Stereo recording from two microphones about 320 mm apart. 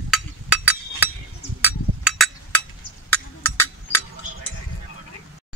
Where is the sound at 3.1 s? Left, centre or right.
Centre.